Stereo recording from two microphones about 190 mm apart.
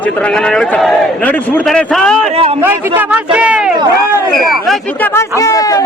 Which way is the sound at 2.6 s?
10° right (ahead or behind).